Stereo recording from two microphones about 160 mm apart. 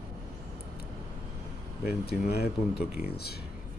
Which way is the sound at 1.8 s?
85° left.